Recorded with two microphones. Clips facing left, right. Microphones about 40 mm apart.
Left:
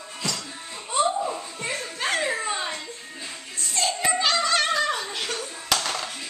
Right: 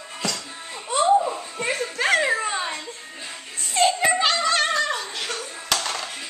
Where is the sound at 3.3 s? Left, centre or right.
Right.